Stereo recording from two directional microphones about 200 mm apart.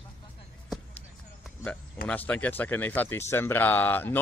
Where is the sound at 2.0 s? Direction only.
10° left (ahead or behind).